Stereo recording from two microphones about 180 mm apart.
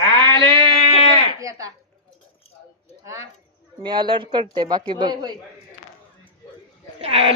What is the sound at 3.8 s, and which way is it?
A man's voice, 25° right (ahead or behind).